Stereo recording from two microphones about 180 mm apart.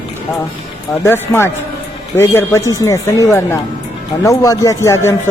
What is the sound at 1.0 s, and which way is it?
Speech, 15° left (ahead or behind).